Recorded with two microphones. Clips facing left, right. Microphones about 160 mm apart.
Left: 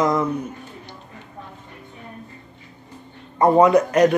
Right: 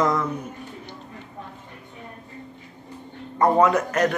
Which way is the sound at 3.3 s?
15° left (ahead or behind).